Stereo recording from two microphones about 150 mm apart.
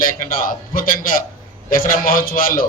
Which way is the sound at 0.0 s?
70° left (ahead or behind).